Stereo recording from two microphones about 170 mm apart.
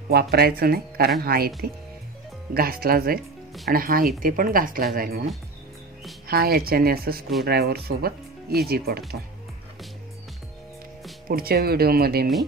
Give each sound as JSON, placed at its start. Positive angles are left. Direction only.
{"t": 0.1, "sound": "speech", "side_deg": -65}
{"t": 2.5, "sound": "speech", "side_deg": -60}
{"t": 6.2, "sound": "speech", "side_deg": -65}
{"t": 11.2, "sound": "speech", "side_deg": -60}